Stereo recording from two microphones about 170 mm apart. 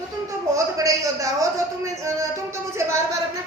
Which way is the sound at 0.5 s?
20° right (ahead or behind).